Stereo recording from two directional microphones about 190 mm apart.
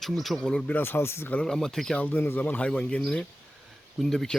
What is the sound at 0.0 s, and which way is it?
Speech, centre (ahead or behind).